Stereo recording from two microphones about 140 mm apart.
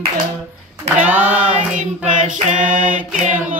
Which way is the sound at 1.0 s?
10° right (ahead or behind).